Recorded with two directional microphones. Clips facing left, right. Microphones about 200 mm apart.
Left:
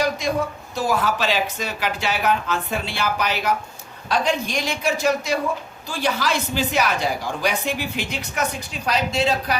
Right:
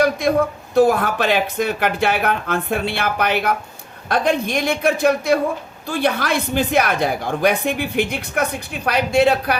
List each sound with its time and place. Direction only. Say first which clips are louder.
0.0 s a woman's voice: right 6 dB; 60° right (ahead or behind)